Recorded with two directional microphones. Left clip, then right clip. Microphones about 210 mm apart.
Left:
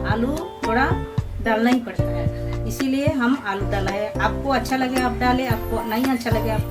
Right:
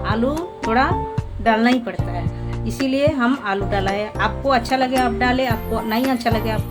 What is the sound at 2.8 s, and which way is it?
Speech, 50° right (ahead or behind).